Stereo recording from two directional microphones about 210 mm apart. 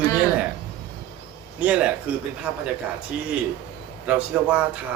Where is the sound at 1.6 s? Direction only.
5° right (ahead or behind).